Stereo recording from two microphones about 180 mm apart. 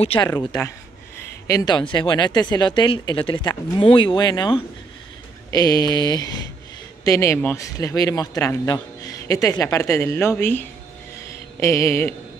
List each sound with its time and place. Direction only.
0.0 s speech: 30° left (ahead or behind)
0.3 s speech: 20° left (ahead or behind)
11.2 s a sound: 15° left (ahead or behind)